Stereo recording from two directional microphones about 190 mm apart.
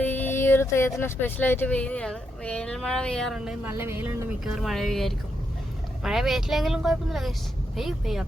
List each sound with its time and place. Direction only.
0.0 s speech: 10° left (ahead or behind); by 4.2 s 15° right (ahead or behind)
4.4 s speech: centre (ahead or behind)